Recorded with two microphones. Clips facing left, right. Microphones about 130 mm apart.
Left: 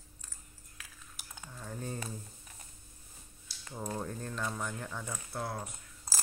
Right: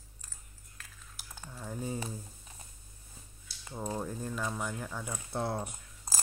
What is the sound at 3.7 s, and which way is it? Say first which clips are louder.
Speech: right 2 dB; 15° right (ahead or behind).